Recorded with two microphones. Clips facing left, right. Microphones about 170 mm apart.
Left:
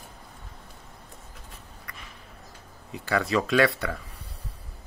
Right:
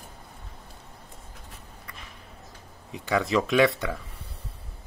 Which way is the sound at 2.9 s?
20° right (ahead or behind).